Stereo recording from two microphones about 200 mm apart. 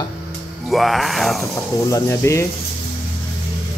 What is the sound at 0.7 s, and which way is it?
Speech, centre (ahead or behind).